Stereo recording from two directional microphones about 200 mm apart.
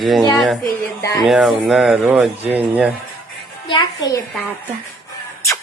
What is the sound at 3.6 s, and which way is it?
Music, 20° left (ahead or behind).